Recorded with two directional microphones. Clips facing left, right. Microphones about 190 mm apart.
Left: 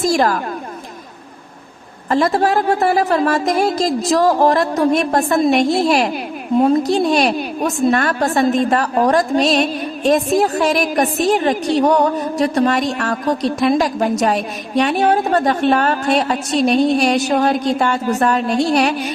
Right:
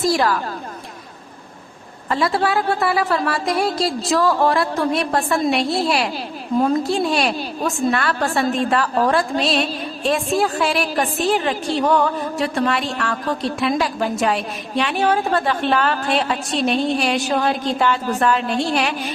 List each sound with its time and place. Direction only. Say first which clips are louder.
0.0 s a woman's voice: left 3 dB; 45° left (ahead or behind)
2.0 s a woman's voice: left 4 dB; 45° left (ahead or behind)